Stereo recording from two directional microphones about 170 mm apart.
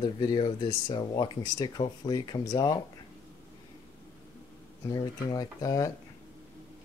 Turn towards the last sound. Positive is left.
turn(degrees=20)  # may be behind; listen again after turning